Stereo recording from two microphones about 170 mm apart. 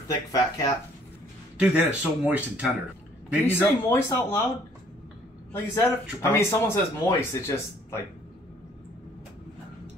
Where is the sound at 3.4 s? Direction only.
15° left (ahead or behind).